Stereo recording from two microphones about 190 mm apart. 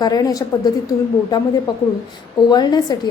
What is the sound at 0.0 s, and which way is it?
Speech, 20° left (ahead or behind).